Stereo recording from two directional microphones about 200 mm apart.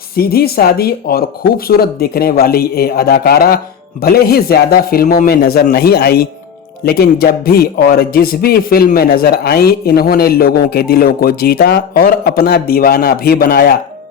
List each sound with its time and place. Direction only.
0.2 s a man's voice: 50° left (ahead or behind)